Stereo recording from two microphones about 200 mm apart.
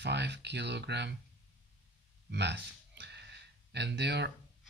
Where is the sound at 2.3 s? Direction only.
60° right (ahead or behind).